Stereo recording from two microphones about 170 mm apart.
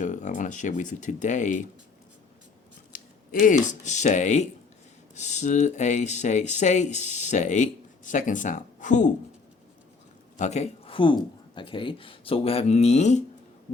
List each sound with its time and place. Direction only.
0.0 s speech: 45° left (ahead or behind)
2.9 s scissors: 55° left (ahead or behind)
3.4 s speech: 45° left (ahead or behind)
10.3 s speech: 40° left (ahead or behind)